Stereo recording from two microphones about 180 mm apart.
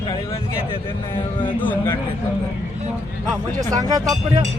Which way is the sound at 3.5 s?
20° right (ahead or behind).